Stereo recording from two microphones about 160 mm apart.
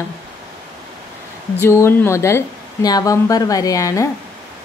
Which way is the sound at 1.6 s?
15° left (ahead or behind).